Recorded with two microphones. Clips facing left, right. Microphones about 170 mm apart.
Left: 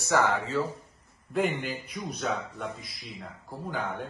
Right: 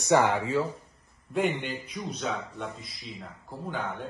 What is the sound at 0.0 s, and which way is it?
Speech, 20° right (ahead or behind).